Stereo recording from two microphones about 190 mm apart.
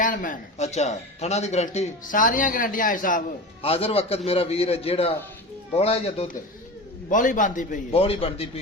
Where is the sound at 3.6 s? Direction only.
30° left (ahead or behind).